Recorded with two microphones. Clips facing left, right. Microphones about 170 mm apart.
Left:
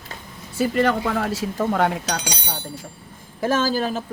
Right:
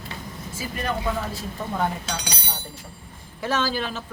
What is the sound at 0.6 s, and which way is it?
Speech, 85° left.